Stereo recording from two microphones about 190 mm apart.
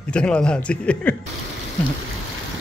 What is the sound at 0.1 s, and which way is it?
Speech, 5° left (ahead or behind).